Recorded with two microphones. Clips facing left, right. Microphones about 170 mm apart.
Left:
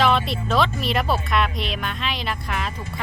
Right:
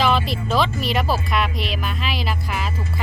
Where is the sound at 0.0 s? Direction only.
Centre (ahead or behind).